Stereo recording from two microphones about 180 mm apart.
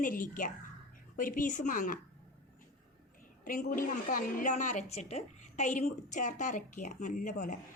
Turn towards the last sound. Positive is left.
turn(degrees=45)  # may be behind; listen again after turning